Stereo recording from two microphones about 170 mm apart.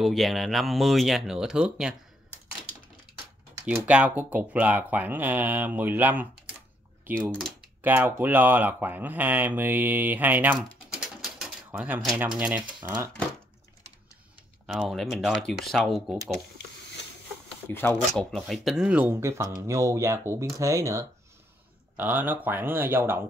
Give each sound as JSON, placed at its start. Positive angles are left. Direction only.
{"t": 0.0, "sound": "speech", "side_deg": 0}
{"t": 3.6, "sound": "speech", "side_deg": -10}
{"t": 7.3, "sound": "typing", "side_deg": 0}
{"t": 7.8, "sound": "speech", "side_deg": -10}
{"t": 11.3, "sound": "pigeon", "side_deg": -5}
{"t": 12.2, "sound": "speech", "side_deg": -10}
{"t": 14.7, "sound": "speech", "side_deg": 0}
{"t": 17.6, "sound": "speech", "side_deg": 10}
{"t": 18.1, "sound": "speech", "side_deg": 0}